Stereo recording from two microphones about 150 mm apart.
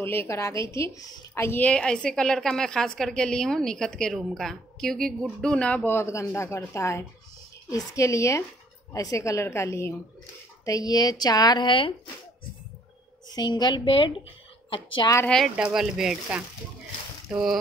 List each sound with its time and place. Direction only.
0.0 s a woman's voice: 15° left (ahead or behind); by 11.9 s 35° left (ahead or behind)
13.3 s speech: 25° left (ahead or behind)
15.2 s a woman's voice: 5° left (ahead or behind)